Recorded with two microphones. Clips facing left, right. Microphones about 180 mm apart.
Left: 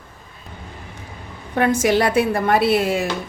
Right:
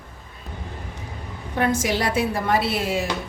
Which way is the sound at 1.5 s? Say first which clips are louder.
Left 5 dB; 60° left (ahead or behind).